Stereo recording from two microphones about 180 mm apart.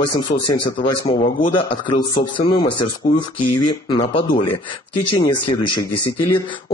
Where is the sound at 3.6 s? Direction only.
25° left (ahead or behind).